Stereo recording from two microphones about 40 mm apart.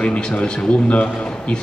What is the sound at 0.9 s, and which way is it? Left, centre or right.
Speech, left.